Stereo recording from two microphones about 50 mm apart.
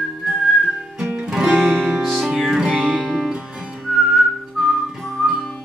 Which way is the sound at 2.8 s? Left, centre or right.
Centre.